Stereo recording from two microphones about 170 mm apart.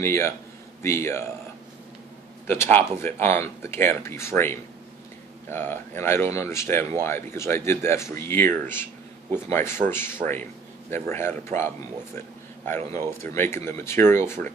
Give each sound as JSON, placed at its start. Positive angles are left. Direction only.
{"t": 0.0, "sound": "speech", "side_deg": 15}
{"t": 2.4, "sound": "speech", "side_deg": 15}